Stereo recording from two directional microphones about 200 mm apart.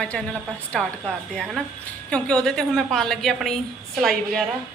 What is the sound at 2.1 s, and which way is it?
A woman's voice, 5° left (ahead or behind).